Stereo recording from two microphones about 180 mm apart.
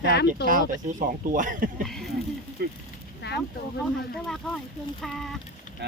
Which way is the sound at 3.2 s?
65° left (ahead or behind).